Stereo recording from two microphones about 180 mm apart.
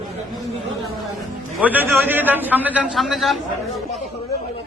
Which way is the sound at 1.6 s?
10° right (ahead or behind).